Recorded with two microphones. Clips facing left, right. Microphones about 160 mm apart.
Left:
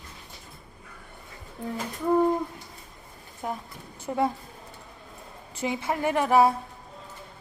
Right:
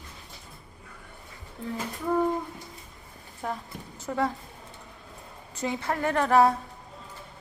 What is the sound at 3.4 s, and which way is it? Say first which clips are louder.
Speech: even; 10° left (ahead or behind).